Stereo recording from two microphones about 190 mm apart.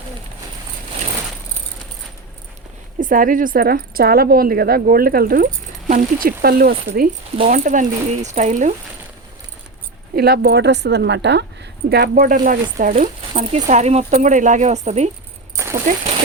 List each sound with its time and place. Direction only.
3.0 s speech: 45° right (ahead or behind)
10.2 s a woman's voice: 55° right (ahead or behind); by 15.1 s 35° right (ahead or behind)
15.5 s a sound: 15° right (ahead or behind)